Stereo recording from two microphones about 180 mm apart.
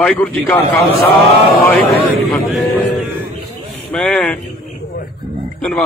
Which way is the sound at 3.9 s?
10° left (ahead or behind).